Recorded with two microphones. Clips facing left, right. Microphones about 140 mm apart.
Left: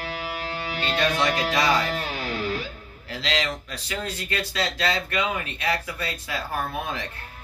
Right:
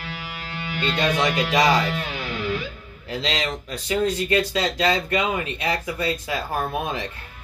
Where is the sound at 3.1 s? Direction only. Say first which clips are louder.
Right 2 dB; 20° right (ahead or behind).